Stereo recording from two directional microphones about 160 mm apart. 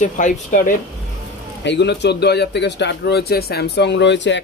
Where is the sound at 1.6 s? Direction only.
90° left.